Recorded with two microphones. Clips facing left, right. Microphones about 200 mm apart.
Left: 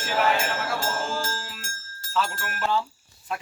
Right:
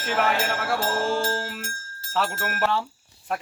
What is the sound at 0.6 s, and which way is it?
Speech, 65° right (ahead or behind).